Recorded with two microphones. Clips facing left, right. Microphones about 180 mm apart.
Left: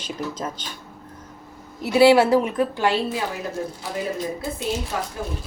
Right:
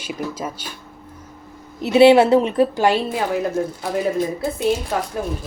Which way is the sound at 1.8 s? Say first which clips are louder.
Right 3 dB; 20° right (ahead or behind).